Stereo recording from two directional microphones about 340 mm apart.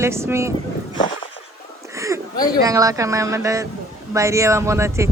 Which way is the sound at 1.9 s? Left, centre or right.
Centre.